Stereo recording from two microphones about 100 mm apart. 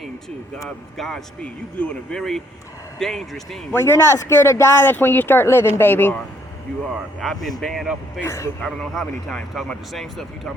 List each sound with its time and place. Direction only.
0.9 s speech: centre (ahead or behind)
1.4 s speech: 10° left (ahead or behind)
3.7 s speech: 25° left (ahead or behind)
7.2 s speech: centre (ahead or behind)
8.2 s speech: 30° left (ahead or behind)
8.6 s speech: 5° left (ahead or behind)